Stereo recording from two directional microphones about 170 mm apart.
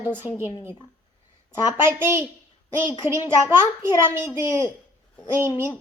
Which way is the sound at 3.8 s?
15° right (ahead or behind).